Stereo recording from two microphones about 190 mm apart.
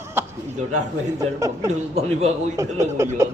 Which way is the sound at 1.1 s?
15° right (ahead or behind).